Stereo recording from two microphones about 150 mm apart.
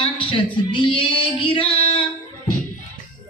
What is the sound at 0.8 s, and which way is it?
Female singing, 35° left (ahead or behind).